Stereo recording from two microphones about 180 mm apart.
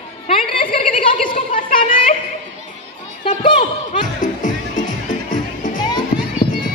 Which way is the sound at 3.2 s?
30° left (ahead or behind).